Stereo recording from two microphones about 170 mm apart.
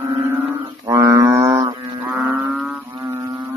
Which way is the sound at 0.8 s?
20° right (ahead or behind).